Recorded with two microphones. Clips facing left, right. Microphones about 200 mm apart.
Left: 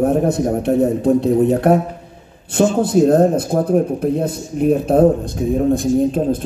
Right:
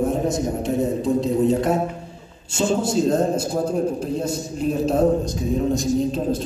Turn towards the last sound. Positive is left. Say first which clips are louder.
# left 5 dB
turn(degrees=55)  # may be behind; listen again after turning